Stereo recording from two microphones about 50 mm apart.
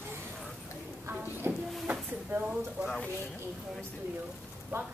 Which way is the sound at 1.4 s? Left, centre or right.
Right.